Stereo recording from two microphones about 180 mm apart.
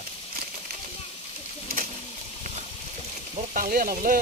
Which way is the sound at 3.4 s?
45° right (ahead or behind).